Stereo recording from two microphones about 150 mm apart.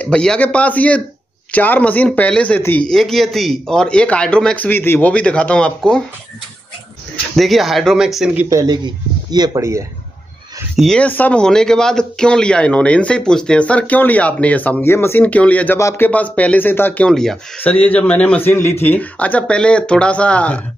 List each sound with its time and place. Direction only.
0.0 s speech: 5° left (ahead or behind)
7.3 s speech: centre (ahead or behind)
8.4 s speech: 20° right (ahead or behind)
10.8 s speech: 5° left (ahead or behind)